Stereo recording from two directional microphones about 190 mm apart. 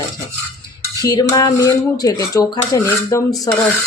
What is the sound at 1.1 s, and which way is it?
Speech, 20° left (ahead or behind).